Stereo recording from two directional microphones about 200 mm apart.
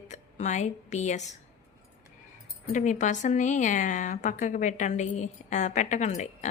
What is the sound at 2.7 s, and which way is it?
A woman's voice, 40° left (ahead or behind).